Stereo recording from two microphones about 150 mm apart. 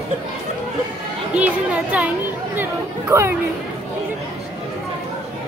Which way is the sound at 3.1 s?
15° right (ahead or behind).